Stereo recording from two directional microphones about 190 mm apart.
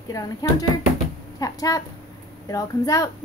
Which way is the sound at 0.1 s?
20° left (ahead or behind).